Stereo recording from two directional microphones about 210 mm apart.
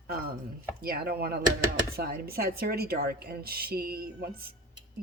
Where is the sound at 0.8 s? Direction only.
45° right (ahead or behind).